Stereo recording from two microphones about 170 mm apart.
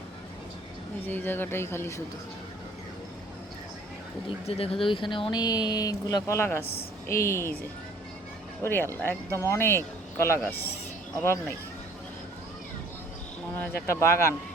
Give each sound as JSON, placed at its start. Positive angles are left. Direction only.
{"t": 1.0, "sound": "speech", "side_deg": 10}
{"t": 4.4, "sound": "speech", "side_deg": 35}
{"t": 8.6, "sound": "speech", "side_deg": 15}
{"t": 13.6, "sound": "speech", "side_deg": 15}